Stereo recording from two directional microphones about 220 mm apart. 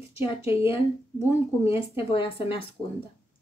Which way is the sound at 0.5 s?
25° left (ahead or behind).